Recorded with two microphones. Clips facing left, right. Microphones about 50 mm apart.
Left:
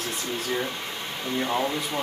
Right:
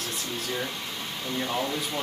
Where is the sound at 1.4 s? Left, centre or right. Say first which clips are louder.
Left 3 dB; centre.